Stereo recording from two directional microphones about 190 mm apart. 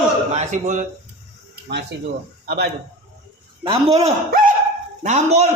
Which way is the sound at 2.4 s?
60° right (ahead or behind).